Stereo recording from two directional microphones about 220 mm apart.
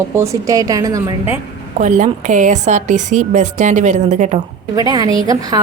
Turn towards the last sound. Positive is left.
turn(degrees=-15)  # may be behind; listen again after turning